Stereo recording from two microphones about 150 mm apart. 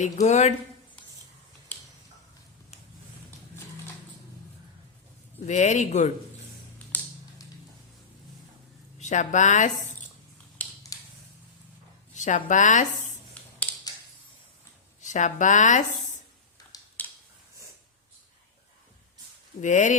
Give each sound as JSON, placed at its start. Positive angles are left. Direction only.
{"t": 0.0, "sound": "speech", "side_deg": 50}
{"t": 5.5, "sound": "speech", "side_deg": 50}
{"t": 9.0, "sound": "speech", "side_deg": 55}
{"t": 10.6, "sound": "mechanisms", "side_deg": 10}
{"t": 12.1, "sound": "a woman's voice", "side_deg": 55}
{"t": 13.4, "sound": "computer keyboard", "side_deg": 10}
{"t": 15.0, "sound": "speech", "side_deg": 55}
{"t": 16.7, "sound": "a sound", "side_deg": 25}
{"t": 19.6, "sound": "speech", "side_deg": 55}